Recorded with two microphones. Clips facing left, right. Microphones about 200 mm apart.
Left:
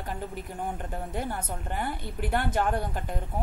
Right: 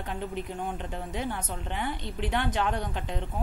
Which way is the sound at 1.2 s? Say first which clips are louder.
Even; 10° left (ahead or behind).